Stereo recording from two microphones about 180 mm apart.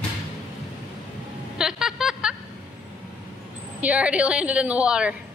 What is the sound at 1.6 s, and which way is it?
Vehicle, 5° right (ahead or behind).